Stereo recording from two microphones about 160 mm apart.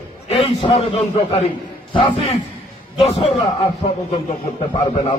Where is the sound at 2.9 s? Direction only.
40° left (ahead or behind).